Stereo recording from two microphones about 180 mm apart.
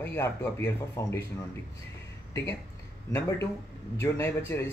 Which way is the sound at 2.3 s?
15° left (ahead or behind).